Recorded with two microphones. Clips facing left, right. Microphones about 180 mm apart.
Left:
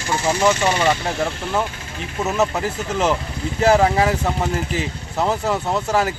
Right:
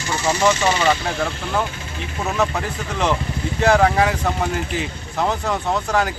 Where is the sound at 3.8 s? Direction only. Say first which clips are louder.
Even; 25° left (ahead or behind).